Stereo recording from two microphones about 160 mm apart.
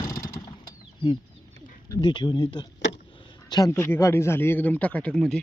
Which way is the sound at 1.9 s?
30° left (ahead or behind).